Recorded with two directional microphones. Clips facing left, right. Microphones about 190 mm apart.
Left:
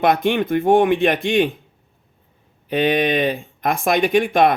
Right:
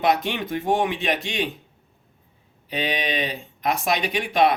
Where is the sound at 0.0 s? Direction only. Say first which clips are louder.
Left 5 dB; 55° left (ahead or behind).